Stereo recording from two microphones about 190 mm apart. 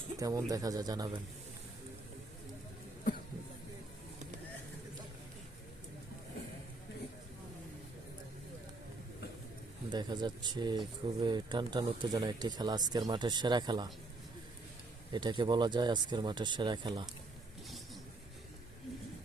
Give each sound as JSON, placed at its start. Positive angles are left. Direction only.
{"t": 0.2, "sound": "speech", "side_deg": -20}
{"t": 9.9, "sound": "speech", "side_deg": -20}
{"t": 15.1, "sound": "speech", "side_deg": -25}